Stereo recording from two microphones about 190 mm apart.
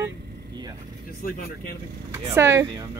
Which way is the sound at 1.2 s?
50° left (ahead or behind).